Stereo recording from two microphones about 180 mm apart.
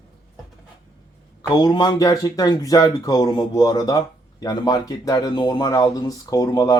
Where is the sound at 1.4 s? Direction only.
20° left (ahead or behind).